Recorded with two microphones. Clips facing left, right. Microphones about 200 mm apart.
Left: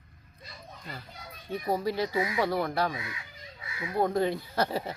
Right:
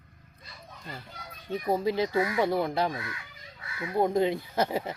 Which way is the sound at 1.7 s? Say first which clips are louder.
Right 2 dB; 20° right (ahead or behind).